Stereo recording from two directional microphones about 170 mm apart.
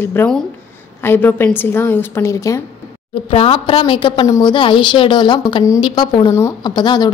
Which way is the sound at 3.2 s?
30° left (ahead or behind).